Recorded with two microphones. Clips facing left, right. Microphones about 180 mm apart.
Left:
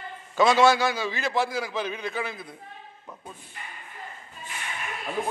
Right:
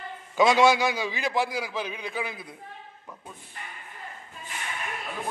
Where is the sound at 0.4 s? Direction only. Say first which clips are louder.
Even; 15° right (ahead or behind).